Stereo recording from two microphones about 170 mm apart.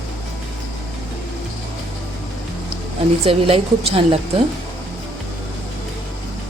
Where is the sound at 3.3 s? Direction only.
35° right (ahead or behind).